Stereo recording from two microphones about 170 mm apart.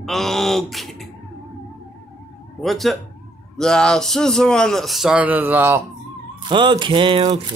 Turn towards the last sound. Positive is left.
turn(degrees=-35)  # may be behind; listen again after turning